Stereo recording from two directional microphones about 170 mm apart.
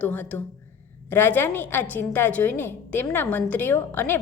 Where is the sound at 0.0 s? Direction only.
10° left (ahead or behind).